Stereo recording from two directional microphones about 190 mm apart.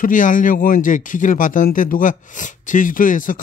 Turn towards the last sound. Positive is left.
turn(degrees=45)  # may be behind; listen again after turning